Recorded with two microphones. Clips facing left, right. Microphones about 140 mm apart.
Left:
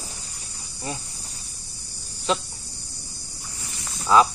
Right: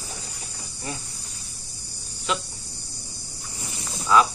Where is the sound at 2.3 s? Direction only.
30° left (ahead or behind).